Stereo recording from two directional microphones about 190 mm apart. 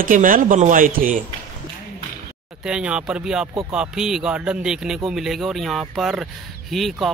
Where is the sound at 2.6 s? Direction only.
5° right (ahead or behind).